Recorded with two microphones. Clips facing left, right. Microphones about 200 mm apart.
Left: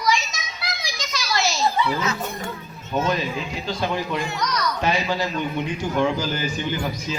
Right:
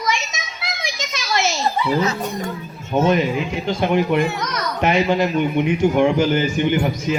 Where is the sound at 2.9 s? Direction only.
20° right (ahead or behind).